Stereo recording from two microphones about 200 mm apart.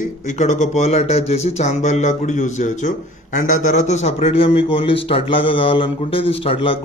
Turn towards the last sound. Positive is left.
turn(degrees=30)  # may be behind; listen again after turning